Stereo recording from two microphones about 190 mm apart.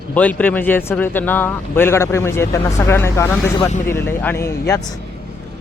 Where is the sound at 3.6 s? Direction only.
35° left (ahead or behind).